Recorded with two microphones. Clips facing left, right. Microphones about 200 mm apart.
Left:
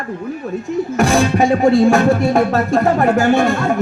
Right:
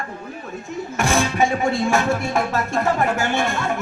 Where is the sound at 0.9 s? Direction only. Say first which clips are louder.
Left 5 dB; 35° left (ahead or behind).